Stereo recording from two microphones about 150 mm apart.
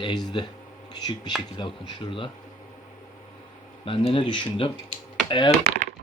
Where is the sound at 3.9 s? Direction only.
35° left (ahead or behind).